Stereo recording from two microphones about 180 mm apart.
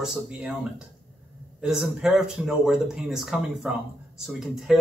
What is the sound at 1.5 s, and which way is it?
Speech, 5° right (ahead or behind).